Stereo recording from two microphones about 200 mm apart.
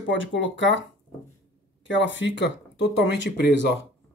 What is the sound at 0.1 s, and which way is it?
Speech, 70° left (ahead or behind).